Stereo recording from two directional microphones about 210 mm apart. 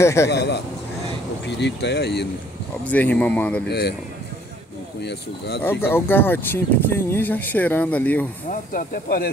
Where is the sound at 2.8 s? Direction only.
5° left (ahead or behind).